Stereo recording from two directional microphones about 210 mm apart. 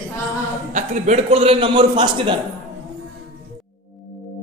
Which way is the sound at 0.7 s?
35° right (ahead or behind).